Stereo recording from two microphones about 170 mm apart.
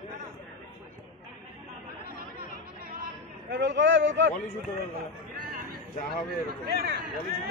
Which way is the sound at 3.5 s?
90° right.